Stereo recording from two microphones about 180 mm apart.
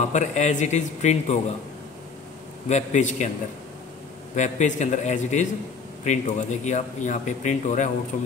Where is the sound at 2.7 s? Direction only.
40° left (ahead or behind).